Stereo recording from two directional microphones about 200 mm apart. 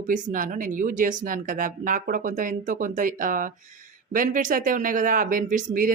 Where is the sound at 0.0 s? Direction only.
40° right (ahead or behind).